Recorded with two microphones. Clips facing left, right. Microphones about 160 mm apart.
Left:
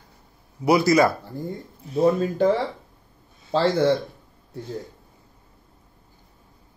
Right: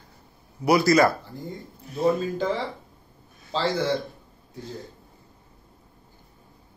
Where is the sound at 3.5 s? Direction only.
55° left (ahead or behind).